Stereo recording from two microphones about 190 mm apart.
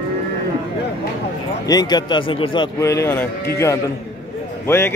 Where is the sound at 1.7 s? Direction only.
20° left (ahead or behind).